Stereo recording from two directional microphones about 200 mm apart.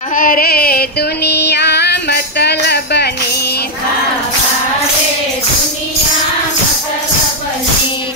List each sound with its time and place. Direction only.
0.1 s female singing: 45° left (ahead or behind)